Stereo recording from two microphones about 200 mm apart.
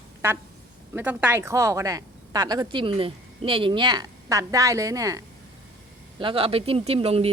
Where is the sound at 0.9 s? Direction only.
10° right (ahead or behind).